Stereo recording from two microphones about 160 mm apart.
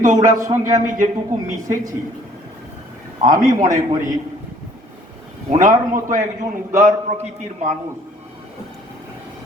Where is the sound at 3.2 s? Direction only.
50° right (ahead or behind).